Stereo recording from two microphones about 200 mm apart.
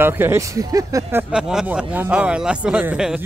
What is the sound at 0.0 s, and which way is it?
A man's voice, 10° right (ahead or behind).